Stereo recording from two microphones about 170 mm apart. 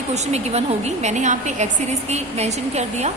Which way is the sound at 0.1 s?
40° right (ahead or behind).